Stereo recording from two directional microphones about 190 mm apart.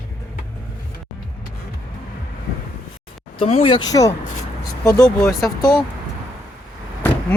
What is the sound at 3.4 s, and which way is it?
Speech, 30° left (ahead or behind).